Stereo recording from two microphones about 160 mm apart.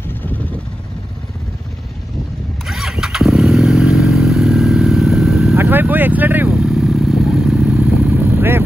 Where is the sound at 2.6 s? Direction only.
Centre (ahead or behind).